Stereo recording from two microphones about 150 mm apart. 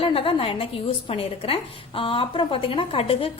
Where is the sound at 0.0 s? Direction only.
35° left (ahead or behind).